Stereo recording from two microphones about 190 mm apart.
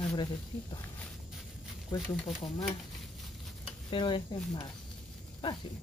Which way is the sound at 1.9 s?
10° left (ahead or behind).